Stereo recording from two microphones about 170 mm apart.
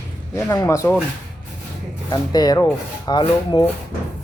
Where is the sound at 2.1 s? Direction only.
25° left (ahead or behind).